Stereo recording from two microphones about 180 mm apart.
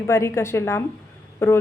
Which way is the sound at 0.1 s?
15° left (ahead or behind).